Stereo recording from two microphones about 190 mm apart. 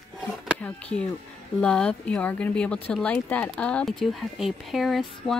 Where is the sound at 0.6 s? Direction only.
5° left (ahead or behind).